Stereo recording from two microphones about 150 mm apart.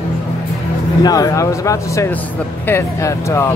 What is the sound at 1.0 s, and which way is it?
Speech, 25° left (ahead or behind).